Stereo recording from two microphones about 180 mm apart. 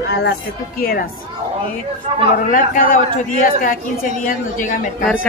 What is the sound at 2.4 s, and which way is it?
A woman's voice, 50° left (ahead or behind).